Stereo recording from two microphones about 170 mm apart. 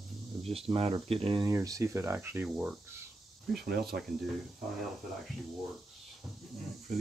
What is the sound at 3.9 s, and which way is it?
Speech, 70° right (ahead or behind).